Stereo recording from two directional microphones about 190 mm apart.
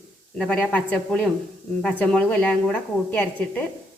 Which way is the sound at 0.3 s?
5° left (ahead or behind).